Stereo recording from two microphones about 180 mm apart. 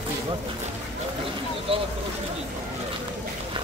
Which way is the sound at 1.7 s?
30° right (ahead or behind).